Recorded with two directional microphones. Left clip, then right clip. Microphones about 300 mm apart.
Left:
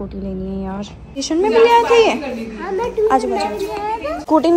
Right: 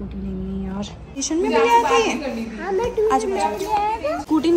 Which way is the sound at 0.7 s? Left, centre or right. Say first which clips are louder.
Left 3 dB; centre.